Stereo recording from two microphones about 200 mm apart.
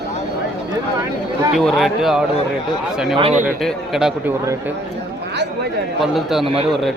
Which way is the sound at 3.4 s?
Centre (ahead or behind).